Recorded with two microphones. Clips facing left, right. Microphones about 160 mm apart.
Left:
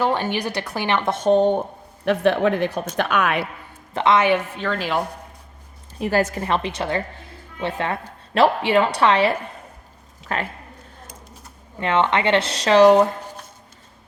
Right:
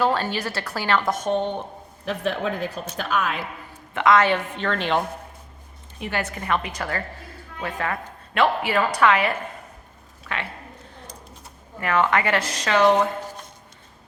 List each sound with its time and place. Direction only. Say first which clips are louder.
0.0 s a woman's voice: left 1 dB; 15° left (ahead or behind); by 1.6 s 40° left (ahead or behind)
2.0 s a woman's voice: left 8 dB; 70° left (ahead or behind)
3.9 s a woman's voice: left 1 dB; 25° left (ahead or behind)
4.6 s a woman's voice: even; 5° left (ahead or behind)
6.0 s a woman's voice: left 8 dB; 40° left (ahead or behind)
11.8 s a woman's voice: left 2 dB; 25° left (ahead or behind)